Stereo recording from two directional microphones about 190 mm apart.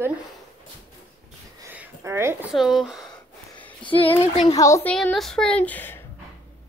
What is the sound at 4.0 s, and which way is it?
Speech, 30° left (ahead or behind).